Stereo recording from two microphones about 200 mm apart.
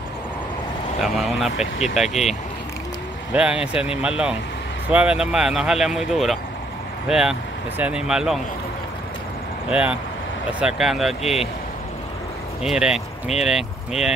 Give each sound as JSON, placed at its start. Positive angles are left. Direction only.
{"t": 1.0, "sound": "speech", "side_deg": 0}
{"t": 3.3, "sound": "speech", "side_deg": -5}
{"t": 9.7, "sound": "speech", "side_deg": -5}
{"t": 12.6, "sound": "speech", "side_deg": -5}